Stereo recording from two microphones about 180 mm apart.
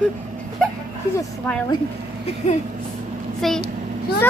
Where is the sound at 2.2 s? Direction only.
40° left (ahead or behind).